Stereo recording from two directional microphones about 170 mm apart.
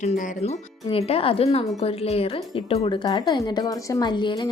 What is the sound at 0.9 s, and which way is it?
A woman's voice, 35° left (ahead or behind).